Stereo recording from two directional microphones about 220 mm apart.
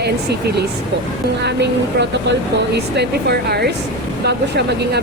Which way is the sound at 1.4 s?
50° right (ahead or behind).